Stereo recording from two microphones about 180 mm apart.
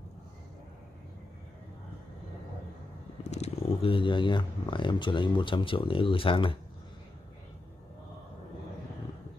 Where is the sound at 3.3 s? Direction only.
35° left (ahead or behind).